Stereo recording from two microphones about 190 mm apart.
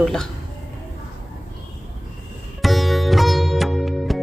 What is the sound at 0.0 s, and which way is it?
Speech, 5° left (ahead or behind).